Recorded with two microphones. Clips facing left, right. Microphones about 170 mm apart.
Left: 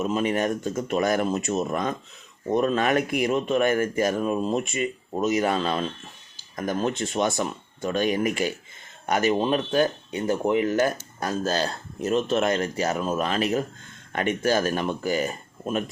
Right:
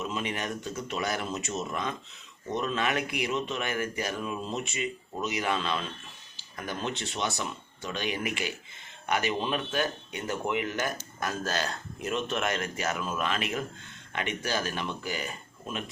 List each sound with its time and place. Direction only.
0.0 s speech: 45° left (ahead or behind)